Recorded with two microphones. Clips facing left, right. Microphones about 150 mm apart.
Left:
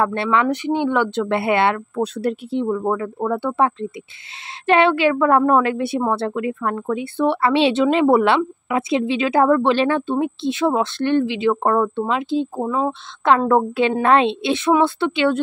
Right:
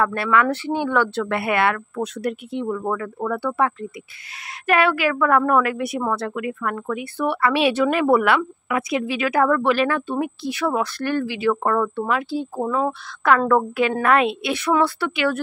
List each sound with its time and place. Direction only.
0.0 s a woman's voice: 25° left (ahead or behind)
13.5 s a woman's voice: 25° left (ahead or behind)